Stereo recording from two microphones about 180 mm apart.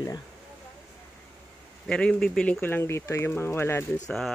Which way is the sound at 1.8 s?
5° left (ahead or behind).